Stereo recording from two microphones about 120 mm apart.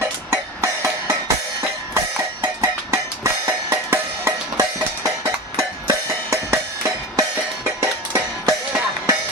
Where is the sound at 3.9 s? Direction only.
25° right (ahead or behind).